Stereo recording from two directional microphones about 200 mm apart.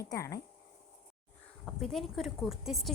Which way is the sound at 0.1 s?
15° left (ahead or behind).